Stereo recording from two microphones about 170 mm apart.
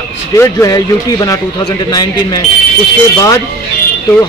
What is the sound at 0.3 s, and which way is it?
Speech, 20° left (ahead or behind).